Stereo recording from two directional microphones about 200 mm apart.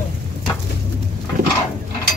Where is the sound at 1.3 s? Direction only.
45° right (ahead or behind).